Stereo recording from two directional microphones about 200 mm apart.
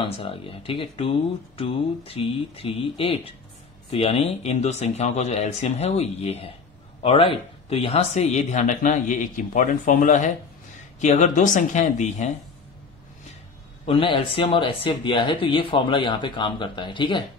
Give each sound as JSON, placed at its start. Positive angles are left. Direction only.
{"t": 0.0, "sound": "speech", "side_deg": 25}
{"t": 13.8, "sound": "speech", "side_deg": 25}